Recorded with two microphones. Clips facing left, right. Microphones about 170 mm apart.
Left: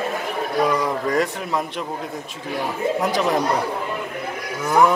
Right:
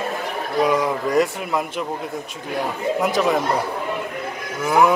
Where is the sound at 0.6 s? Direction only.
Centre (ahead or behind).